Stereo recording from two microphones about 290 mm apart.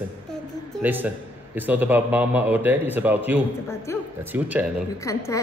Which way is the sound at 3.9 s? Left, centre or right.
Centre.